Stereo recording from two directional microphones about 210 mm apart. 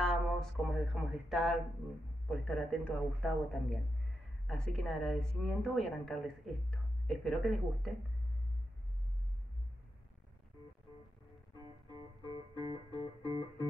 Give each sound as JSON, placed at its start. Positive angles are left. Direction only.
{"t": 0.0, "sound": "a sound", "side_deg": 0}
{"t": 2.2, "sound": "a woman's voice", "side_deg": 0}
{"t": 11.6, "sound": "music", "side_deg": -20}